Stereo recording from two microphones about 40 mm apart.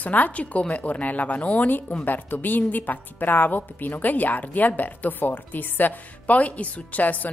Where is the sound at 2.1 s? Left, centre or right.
Left.